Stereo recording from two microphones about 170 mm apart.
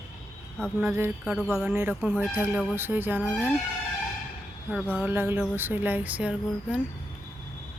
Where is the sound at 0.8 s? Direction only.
10° right (ahead or behind).